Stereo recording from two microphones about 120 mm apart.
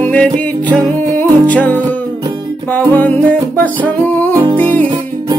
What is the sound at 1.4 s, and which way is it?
Music, 15° left (ahead or behind).